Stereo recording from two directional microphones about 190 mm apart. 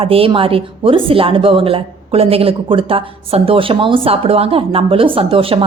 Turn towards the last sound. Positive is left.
turn(degrees=-30)  # may be behind; listen again after turning